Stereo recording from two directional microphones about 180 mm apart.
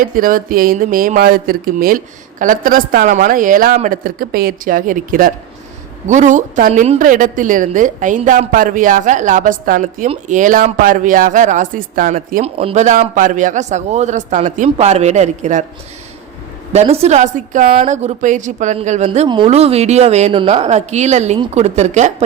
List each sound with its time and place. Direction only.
0.0 s a woman's voice: 50° right (ahead or behind)
12.4 s a man's voice: 35° right (ahead or behind)
16.9 s a man's voice: 35° right (ahead or behind)